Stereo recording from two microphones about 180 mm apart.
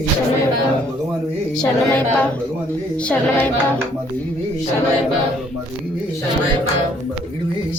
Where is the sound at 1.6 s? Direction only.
5° left (ahead or behind).